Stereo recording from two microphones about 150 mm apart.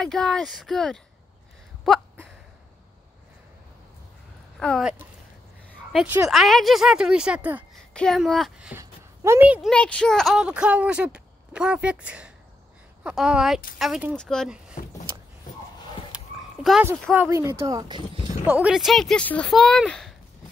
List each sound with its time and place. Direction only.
0.0 s speech: 5° left (ahead or behind)
4.6 s speech: 5° left (ahead or behind)
6.2 s speech: centre (ahead or behind)
7.9 s speech: 5° left (ahead or behind)
8.7 s a sound: 15° right (ahead or behind)
9.7 s speech: 5° left (ahead or behind)
16.1 s dog: 5° right (ahead or behind)
16.6 s a sound: 5° right (ahead or behind)
17.1 s speech: 15° right (ahead or behind)
17.6 s speech: 25° right (ahead or behind)
18.5 s speech: 5° right (ahead or behind)